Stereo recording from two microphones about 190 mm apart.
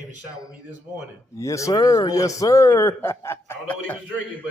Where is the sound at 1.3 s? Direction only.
15° left (ahead or behind).